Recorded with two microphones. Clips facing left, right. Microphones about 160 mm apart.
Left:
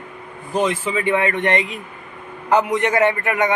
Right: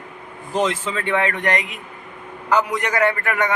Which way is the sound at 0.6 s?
10° left (ahead or behind).